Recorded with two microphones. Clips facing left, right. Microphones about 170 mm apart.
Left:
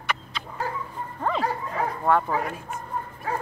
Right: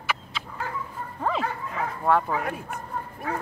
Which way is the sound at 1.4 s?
35° left (ahead or behind).